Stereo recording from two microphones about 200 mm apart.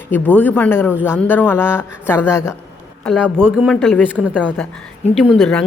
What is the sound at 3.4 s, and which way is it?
Speech, 5° right (ahead or behind).